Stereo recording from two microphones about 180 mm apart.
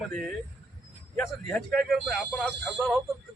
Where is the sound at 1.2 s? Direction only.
5° left (ahead or behind).